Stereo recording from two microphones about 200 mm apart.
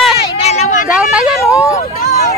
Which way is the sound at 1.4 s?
15° left (ahead or behind).